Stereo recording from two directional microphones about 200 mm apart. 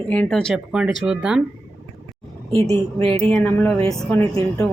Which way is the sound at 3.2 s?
10° left (ahead or behind).